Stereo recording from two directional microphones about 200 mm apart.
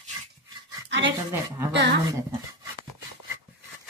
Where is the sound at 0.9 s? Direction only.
60° right (ahead or behind).